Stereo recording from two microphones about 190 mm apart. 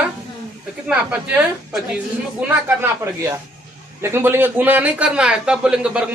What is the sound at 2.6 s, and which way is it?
A man's voice, 15° right (ahead or behind).